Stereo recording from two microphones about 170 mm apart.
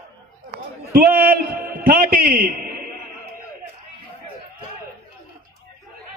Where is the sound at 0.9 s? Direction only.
60° right (ahead or behind).